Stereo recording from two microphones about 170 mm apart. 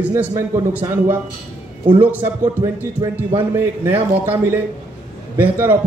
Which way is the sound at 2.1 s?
15° right (ahead or behind).